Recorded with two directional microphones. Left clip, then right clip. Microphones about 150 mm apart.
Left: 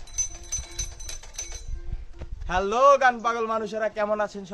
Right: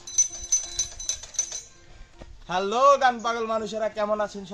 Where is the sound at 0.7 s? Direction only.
25° left (ahead or behind).